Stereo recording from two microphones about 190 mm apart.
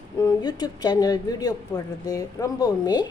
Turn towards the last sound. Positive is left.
turn(degrees=20)  # may be behind; listen again after turning